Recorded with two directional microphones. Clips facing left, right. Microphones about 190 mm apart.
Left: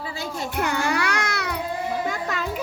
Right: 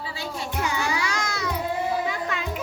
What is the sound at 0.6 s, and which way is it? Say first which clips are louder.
Music: left 3 dB; 60° left (ahead or behind).